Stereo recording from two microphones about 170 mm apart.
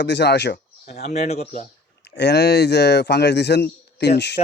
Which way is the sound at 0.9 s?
40° left (ahead or behind).